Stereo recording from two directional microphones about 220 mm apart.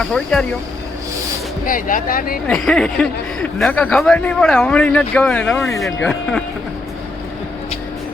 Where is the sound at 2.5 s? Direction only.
5° left (ahead or behind).